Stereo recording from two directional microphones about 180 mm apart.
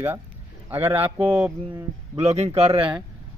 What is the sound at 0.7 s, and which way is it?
Speech, 10° right (ahead or behind).